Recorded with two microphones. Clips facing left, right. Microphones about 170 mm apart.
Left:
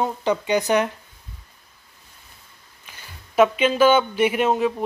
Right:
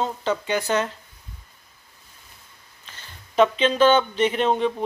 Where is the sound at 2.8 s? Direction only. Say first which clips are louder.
Left 1 dB; 10° left (ahead or behind).